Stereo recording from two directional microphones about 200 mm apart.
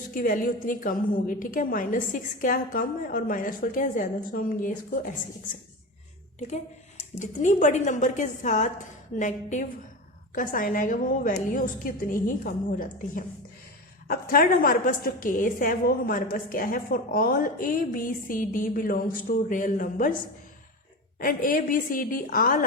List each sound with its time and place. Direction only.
0.1 s a woman's voice: 45° left (ahead or behind)
6.5 s a woman's voice: 35° left (ahead or behind)
21.2 s a woman's voice: 45° left (ahead or behind)